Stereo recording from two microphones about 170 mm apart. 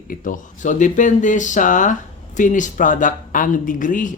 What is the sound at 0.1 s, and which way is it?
Speech, 50° left (ahead or behind).